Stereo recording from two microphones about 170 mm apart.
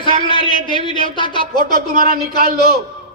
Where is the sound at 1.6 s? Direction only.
60° right (ahead or behind).